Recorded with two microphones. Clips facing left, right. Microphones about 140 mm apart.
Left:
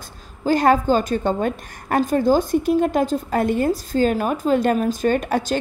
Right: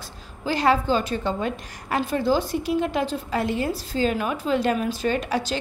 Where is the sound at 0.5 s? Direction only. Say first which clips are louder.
Left 5 dB; 45° left (ahead or behind).